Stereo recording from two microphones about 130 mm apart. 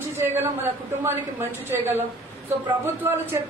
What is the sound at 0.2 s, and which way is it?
A woman's voice, 20° right (ahead or behind).